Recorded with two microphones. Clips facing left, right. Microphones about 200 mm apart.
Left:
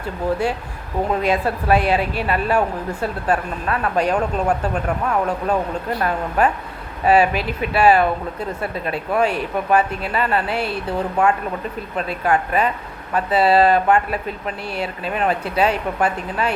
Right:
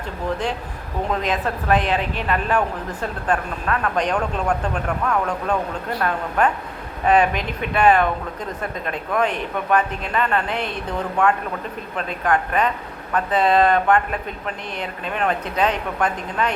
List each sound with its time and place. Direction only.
1.2 s a woman's voice: 10° left (ahead or behind)
6.0 s a woman's voice: 10° left (ahead or behind)